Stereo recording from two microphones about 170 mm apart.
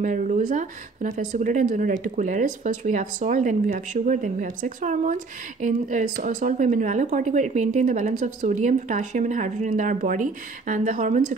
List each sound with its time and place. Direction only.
0.0 s speech: 50° right (ahead or behind)